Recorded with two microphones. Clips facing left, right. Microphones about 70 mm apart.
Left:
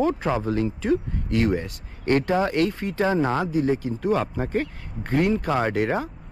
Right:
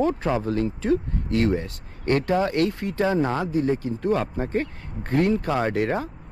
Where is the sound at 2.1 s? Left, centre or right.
Left.